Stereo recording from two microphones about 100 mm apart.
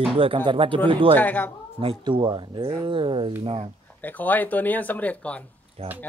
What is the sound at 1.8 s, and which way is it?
Speech, 65° right (ahead or behind).